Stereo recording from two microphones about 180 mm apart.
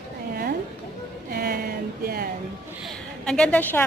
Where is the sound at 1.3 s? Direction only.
55° right (ahead or behind).